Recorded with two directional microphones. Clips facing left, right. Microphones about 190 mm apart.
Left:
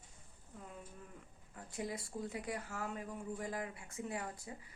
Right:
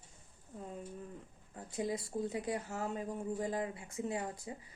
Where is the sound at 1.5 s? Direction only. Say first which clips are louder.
Right 5 dB; 25° right (ahead or behind).